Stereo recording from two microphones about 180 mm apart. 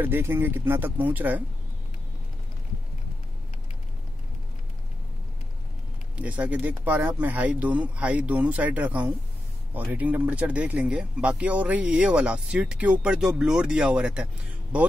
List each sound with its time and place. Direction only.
0.0 s speech: 15° right (ahead or behind)
6.2 s speech: 5° right (ahead or behind)